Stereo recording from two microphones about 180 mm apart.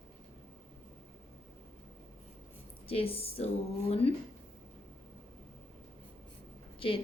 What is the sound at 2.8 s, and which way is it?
A woman's voice, 30° left (ahead or behind).